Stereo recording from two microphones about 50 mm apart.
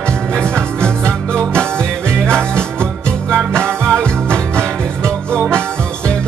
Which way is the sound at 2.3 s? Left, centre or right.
Centre.